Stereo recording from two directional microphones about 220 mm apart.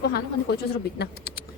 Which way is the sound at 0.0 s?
45° left (ahead or behind).